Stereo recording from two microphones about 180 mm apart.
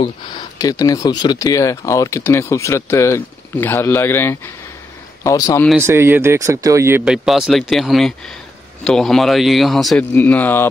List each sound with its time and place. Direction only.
0.0 s speech: 20° left (ahead or behind)
5.8 s speech: 15° right (ahead or behind)
7.1 s speech: centre (ahead or behind)